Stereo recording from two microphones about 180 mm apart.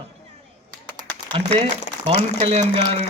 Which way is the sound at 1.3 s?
35° right (ahead or behind).